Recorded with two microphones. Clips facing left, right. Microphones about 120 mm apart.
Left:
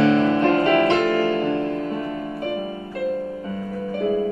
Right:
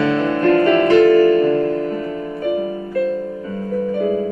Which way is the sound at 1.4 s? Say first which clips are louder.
Right 7 dB; 40° right (ahead or behind).